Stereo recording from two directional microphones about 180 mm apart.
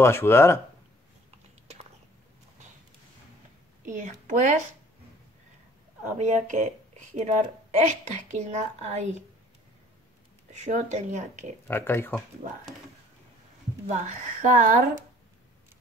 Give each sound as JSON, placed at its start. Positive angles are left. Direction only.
{"t": 0.0, "sound": "speech", "side_deg": 15}
{"t": 3.8, "sound": "speech", "side_deg": -45}
{"t": 6.1, "sound": "a woman's voice", "side_deg": -40}
{"t": 10.5, "sound": "a woman's voice", "side_deg": -40}
{"t": 11.6, "sound": "speech", "side_deg": 10}
{"t": 13.8, "sound": "speech", "side_deg": -40}